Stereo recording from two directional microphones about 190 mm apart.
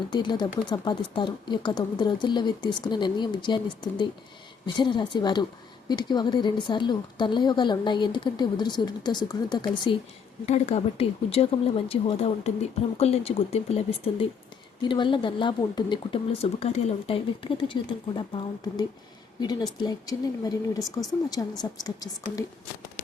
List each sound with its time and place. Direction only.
0.1 s a woman's voice: 25° left (ahead or behind)
10.4 s a woman's voice: 35° left (ahead or behind); by 22.4 s 20° left (ahead or behind)